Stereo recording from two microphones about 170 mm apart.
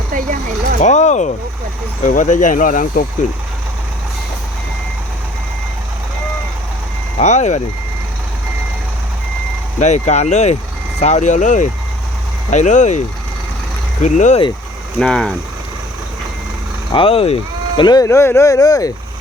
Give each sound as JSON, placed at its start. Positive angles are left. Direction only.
{"t": 0.1, "sound": "vehicle", "side_deg": -55}
{"t": 0.8, "sound": "speech", "side_deg": 45}
{"t": 7.2, "sound": "speech", "side_deg": 45}
{"t": 9.8, "sound": "speech", "side_deg": 45}
{"t": 14.0, "sound": "speech", "side_deg": 45}
{"t": 14.9, "sound": "speech", "side_deg": 5}
{"t": 16.9, "sound": "speech", "side_deg": 35}